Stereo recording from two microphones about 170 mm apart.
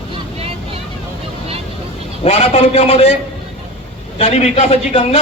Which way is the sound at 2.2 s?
40° left (ahead or behind).